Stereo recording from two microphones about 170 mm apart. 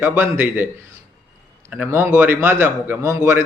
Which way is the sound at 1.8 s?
15° right (ahead or behind).